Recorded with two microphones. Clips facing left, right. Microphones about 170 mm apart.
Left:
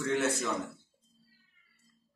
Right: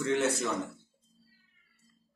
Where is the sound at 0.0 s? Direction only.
20° right (ahead or behind).